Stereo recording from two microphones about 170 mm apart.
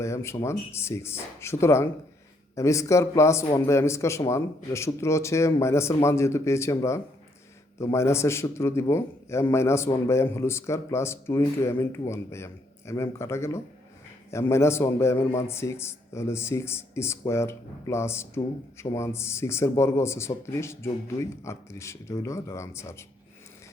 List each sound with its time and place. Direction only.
0.0 s a man's voice: 15° left (ahead or behind)